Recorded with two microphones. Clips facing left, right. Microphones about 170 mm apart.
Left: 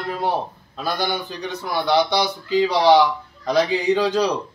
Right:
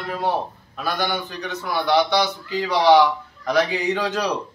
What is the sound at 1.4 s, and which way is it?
A man's voice, 15° left (ahead or behind).